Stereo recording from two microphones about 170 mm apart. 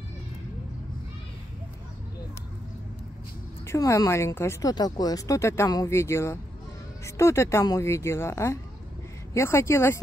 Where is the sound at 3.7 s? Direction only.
20° left (ahead or behind).